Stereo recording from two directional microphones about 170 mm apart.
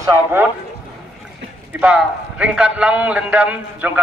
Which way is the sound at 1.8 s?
5° right (ahead or behind).